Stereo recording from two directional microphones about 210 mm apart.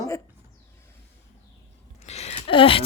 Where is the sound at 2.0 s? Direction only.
30° left (ahead or behind).